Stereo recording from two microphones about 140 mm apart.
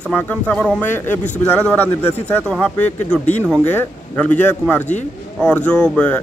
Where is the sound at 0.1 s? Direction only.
10° left (ahead or behind).